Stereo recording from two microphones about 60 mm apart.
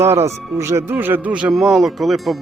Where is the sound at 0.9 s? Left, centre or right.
Right.